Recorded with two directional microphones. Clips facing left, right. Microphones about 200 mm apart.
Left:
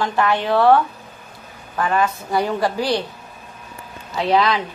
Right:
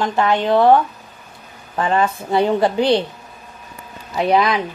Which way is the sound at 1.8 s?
25° right (ahead or behind).